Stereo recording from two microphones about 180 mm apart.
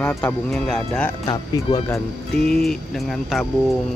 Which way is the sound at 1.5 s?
20° left (ahead or behind).